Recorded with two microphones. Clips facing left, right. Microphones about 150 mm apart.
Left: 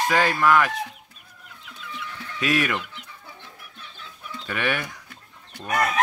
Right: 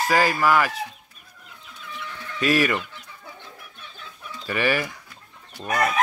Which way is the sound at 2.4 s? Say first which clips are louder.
Right 3 dB; centre (ahead or behind).